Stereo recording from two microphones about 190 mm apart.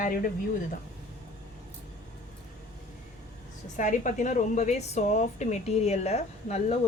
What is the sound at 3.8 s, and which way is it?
A woman's voice, 40° left (ahead or behind).